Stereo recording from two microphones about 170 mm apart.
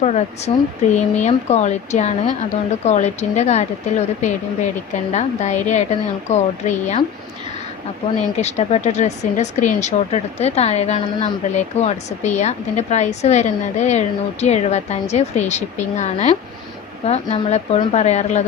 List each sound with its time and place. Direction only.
0.0 s speech: 40° left (ahead or behind)
8.4 s speech: 40° left (ahead or behind)